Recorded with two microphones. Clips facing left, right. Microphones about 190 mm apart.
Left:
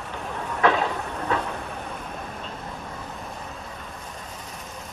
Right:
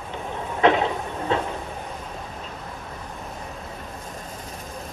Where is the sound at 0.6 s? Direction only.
20° right (ahead or behind).